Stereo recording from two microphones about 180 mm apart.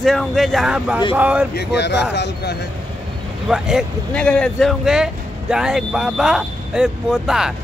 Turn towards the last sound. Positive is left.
turn(degrees=-5)  # may be behind; listen again after turning